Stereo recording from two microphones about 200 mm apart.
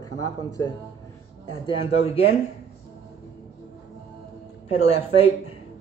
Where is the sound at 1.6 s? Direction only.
30° left (ahead or behind).